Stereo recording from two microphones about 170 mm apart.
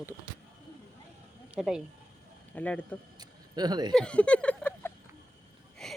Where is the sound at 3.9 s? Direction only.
5° left (ahead or behind).